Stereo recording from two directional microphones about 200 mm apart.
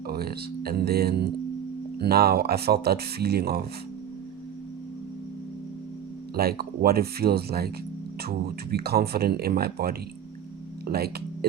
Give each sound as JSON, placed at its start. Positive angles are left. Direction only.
{"t": 0.1, "sound": "speech", "side_deg": -50}
{"t": 6.3, "sound": "speech", "side_deg": -50}